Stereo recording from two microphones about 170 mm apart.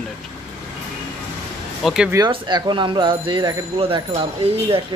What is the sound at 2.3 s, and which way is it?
Speech, 25° right (ahead or behind).